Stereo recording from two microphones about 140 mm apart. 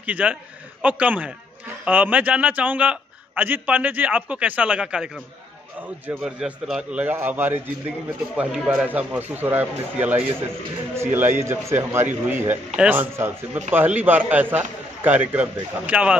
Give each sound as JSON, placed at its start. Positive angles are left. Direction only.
{"t": 0.0, "sound": "a man's voice", "side_deg": -10}